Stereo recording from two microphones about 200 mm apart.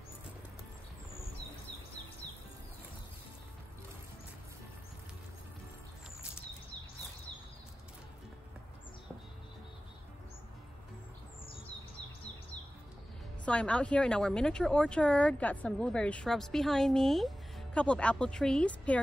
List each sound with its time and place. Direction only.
13.5 s a woman's voice: 5° left (ahead or behind)